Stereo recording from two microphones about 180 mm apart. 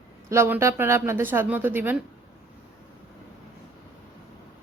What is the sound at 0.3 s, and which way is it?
Speech, 15° right (ahead or behind).